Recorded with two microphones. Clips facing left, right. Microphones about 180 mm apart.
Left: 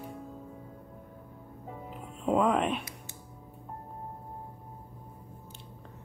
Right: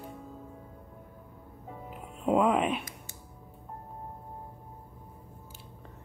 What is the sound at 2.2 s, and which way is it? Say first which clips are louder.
Music: right 1 dB; 5° right (ahead or behind).